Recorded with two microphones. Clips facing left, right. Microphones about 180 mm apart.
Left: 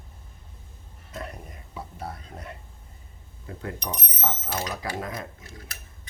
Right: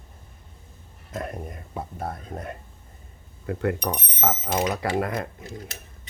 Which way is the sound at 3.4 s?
70° right (ahead or behind).